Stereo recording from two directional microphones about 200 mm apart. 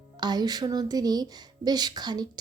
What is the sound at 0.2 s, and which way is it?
Speech, 20° right (ahead or behind).